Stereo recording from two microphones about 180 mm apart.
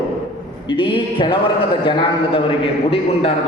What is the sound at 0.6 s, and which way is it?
Speech, 25° left (ahead or behind).